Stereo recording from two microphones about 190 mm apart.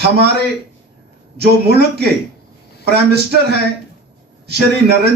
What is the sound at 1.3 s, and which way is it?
A man's voice, 60° right (ahead or behind).